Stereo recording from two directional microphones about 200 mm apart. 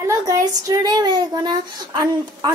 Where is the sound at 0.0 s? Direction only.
15° right (ahead or behind).